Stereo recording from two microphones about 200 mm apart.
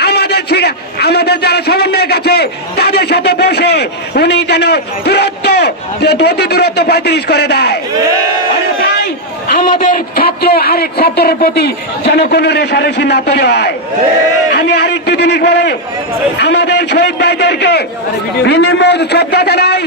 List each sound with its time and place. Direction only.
0.0 s a man's voice: 55° left (ahead or behind)
9.7 s a man's voice: 45° left (ahead or behind)